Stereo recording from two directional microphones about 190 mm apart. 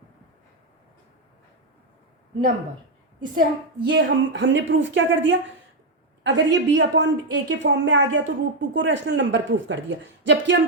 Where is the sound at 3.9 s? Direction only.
70° right (ahead or behind).